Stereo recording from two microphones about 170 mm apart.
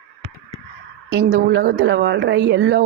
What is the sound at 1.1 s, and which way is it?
Speech, 90° right.